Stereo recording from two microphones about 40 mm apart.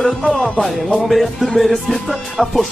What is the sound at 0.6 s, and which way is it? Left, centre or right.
Speech, centre.